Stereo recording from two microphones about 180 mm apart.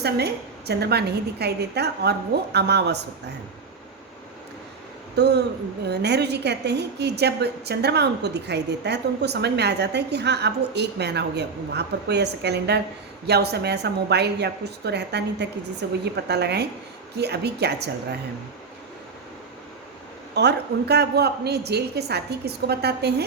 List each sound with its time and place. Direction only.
0.0 s a woman's voice: 65° right (ahead or behind)
5.1 s a woman's voice: 70° right (ahead or behind)
20.3 s a woman's voice: 70° right (ahead or behind)